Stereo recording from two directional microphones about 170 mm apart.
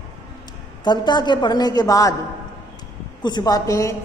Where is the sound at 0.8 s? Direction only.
25° left (ahead or behind).